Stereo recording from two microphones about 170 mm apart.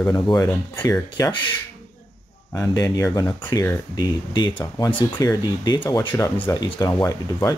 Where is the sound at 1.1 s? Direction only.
25° left (ahead or behind).